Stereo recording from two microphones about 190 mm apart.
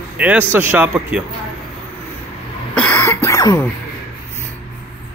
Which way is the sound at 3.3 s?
15° left (ahead or behind).